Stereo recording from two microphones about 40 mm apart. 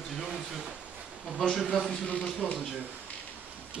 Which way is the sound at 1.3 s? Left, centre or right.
Centre.